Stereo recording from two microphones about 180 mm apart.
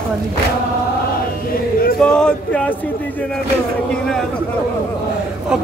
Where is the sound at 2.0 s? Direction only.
5° left (ahead or behind).